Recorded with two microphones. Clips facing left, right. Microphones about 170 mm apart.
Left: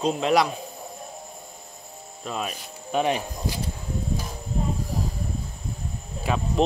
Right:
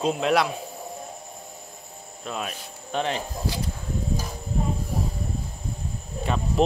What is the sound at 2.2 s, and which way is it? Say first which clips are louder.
Speech: left 1 dB; centre (ahead or behind).